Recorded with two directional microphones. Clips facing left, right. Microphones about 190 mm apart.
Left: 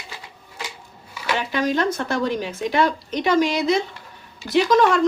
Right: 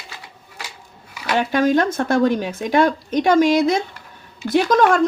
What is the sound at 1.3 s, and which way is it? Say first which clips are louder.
Speech: right 6 dB; 50° right (ahead or behind).